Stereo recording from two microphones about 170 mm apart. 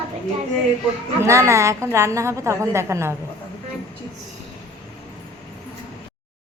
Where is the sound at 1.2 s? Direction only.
15° right (ahead or behind).